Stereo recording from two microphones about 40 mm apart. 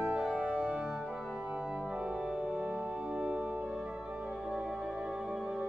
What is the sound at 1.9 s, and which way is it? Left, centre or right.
Organ, right.